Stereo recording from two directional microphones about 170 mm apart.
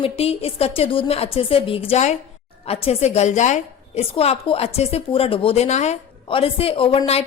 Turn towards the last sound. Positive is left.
turn(degrees=30)  # may be behind; listen again after turning